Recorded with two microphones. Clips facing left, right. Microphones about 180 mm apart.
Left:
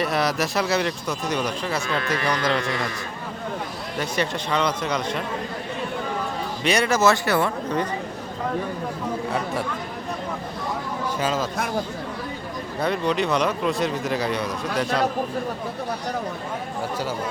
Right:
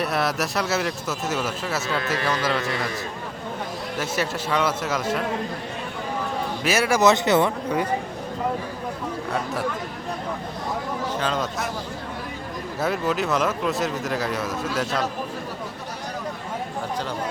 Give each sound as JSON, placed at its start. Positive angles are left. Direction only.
{"t": 0.0, "sound": "speech", "side_deg": 0}
{"t": 3.9, "sound": "speech", "side_deg": -5}
{"t": 6.7, "sound": "speech", "side_deg": -5}
{"t": 7.0, "sound": "speech", "side_deg": -20}
{"t": 11.2, "sound": "speech", "side_deg": 5}
{"t": 12.8, "sound": "speech", "side_deg": -5}